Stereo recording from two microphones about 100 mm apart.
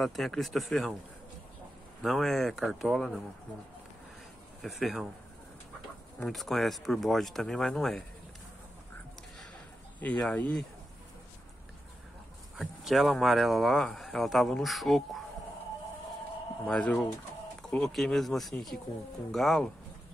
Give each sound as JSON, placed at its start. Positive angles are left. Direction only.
{"t": 0.0, "sound": "speech", "side_deg": 0}
{"t": 2.0, "sound": "speech", "side_deg": 0}
{"t": 4.6, "sound": "speech", "side_deg": 0}
{"t": 6.1, "sound": "speech", "side_deg": 0}
{"t": 9.9, "sound": "speech", "side_deg": 15}
{"t": 12.5, "sound": "speech", "side_deg": 0}
{"t": 16.6, "sound": "speech", "side_deg": 10}